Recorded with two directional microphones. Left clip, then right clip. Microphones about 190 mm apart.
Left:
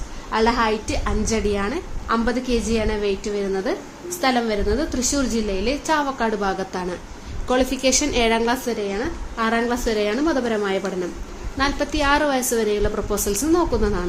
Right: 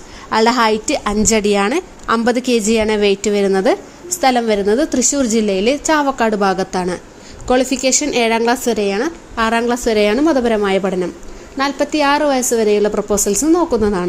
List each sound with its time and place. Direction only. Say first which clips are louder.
0.3 s a woman's voice: right 6 dB; 50° right (ahead or behind); by 8.7 s 35° right (ahead or behind)
8.8 s a woman's voice: right 8 dB; 50° right (ahead or behind)